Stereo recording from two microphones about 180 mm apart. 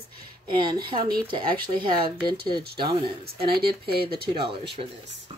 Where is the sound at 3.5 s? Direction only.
60° right (ahead or behind).